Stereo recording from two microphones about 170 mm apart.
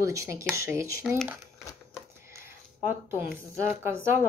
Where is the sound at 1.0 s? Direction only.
Centre (ahead or behind).